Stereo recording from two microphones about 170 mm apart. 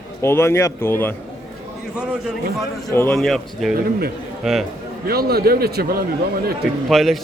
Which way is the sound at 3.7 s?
60° right (ahead or behind).